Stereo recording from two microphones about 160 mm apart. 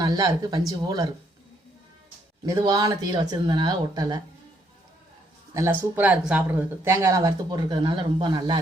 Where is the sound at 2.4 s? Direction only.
25° right (ahead or behind).